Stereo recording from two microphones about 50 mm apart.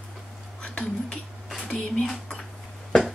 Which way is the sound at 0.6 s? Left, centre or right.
Left.